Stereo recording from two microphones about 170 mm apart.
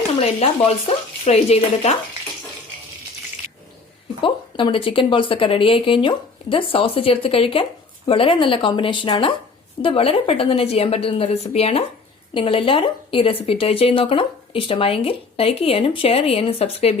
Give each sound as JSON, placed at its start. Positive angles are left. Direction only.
{"t": 0.2, "sound": "a woman's voice", "side_deg": 35}
{"t": 4.2, "sound": "a woman's voice", "side_deg": 30}